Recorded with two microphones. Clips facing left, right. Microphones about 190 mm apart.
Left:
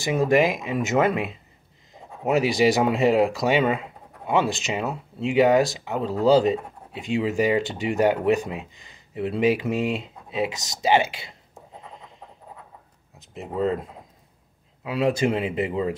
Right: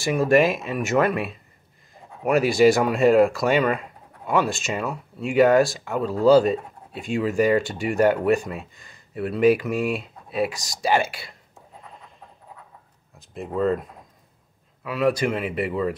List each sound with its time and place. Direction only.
0.0 s speech: 15° left (ahead or behind)
13.3 s speech: 20° left (ahead or behind)
14.9 s speech: 25° left (ahead or behind)